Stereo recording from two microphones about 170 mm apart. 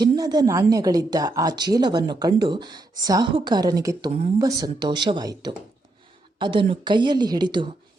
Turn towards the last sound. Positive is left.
turn(degrees=-25)  # may be behind; listen again after turning